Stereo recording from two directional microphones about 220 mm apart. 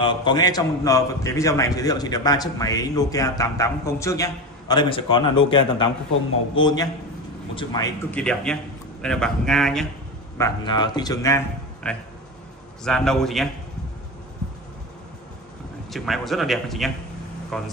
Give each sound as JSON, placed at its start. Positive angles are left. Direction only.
{"t": 0.0, "sound": "a man's voice", "side_deg": 20}
{"t": 8.1, "sound": "speech", "side_deg": 5}
{"t": 10.3, "sound": "a man's voice", "side_deg": 15}
{"t": 15.9, "sound": "speech", "side_deg": 0}